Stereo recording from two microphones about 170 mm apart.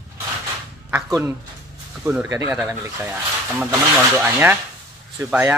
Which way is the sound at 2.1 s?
15° right (ahead or behind).